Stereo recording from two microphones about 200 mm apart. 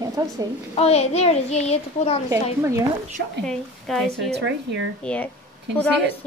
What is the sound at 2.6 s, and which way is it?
Speech, 15° right (ahead or behind).